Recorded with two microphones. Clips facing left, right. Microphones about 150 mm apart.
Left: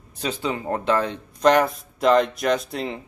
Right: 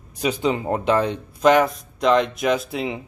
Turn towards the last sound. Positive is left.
turn(degrees=-5)  # may be behind; listen again after turning